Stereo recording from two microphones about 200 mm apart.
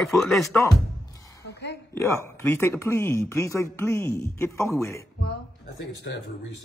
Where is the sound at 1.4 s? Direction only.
55° left (ahead or behind).